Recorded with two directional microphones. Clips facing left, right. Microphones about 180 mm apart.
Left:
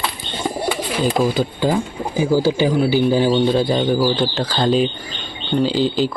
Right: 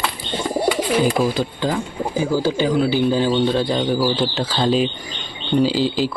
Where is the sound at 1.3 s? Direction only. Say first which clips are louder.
Left 3 dB; 5° left (ahead or behind).